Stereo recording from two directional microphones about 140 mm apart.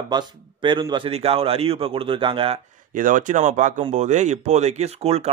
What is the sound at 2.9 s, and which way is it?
Speech, 70° right (ahead or behind).